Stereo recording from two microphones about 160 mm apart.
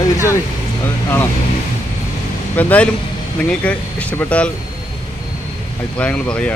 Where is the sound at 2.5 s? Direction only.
10° left (ahead or behind).